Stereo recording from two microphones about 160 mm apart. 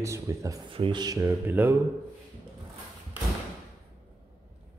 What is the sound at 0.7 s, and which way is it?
Speech, 30° right (ahead or behind).